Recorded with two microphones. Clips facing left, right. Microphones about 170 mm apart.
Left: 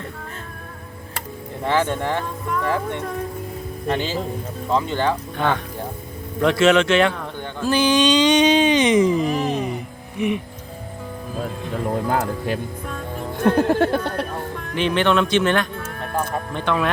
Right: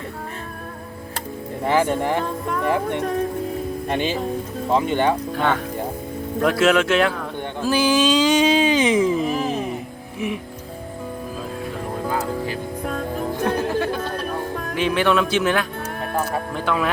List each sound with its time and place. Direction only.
1.6 s speech: 10° right (ahead or behind)
6.4 s speech: 5° right (ahead or behind)
7.6 s a sound: 5° right (ahead or behind)
13.4 s speech: 55° left (ahead or behind)
14.5 s music: 45° right (ahead or behind)
14.8 s speech: 5° right (ahead or behind)